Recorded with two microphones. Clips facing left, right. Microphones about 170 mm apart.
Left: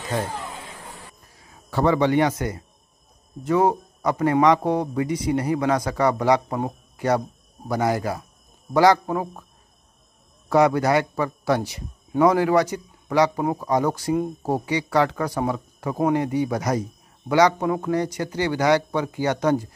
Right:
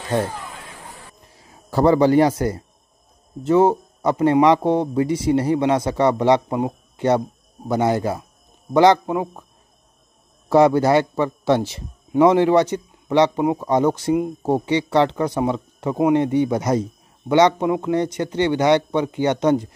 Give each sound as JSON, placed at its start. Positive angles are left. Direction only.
{"t": 1.2, "sound": "a man's voice", "side_deg": -30}
{"t": 10.5, "sound": "speech", "side_deg": -30}